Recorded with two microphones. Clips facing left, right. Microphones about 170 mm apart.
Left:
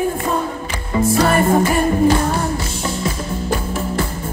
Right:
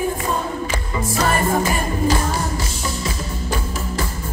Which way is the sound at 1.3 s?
55° left (ahead or behind).